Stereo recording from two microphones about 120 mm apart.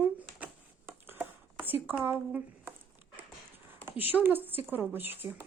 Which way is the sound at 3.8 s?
15° right (ahead or behind).